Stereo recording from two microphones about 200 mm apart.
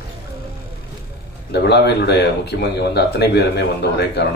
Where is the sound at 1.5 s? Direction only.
55° left (ahead or behind).